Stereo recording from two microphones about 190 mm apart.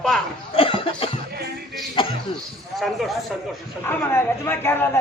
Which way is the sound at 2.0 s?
25° left (ahead or behind).